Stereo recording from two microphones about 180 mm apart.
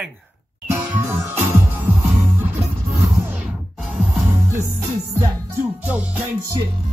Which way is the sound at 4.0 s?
15° right (ahead or behind).